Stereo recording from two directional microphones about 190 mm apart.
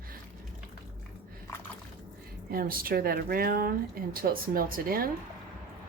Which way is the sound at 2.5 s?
50° right (ahead or behind).